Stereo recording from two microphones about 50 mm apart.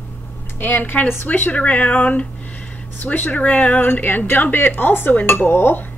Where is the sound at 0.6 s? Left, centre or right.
Left.